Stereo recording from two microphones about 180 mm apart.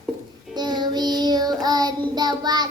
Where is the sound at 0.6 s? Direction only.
25° right (ahead or behind).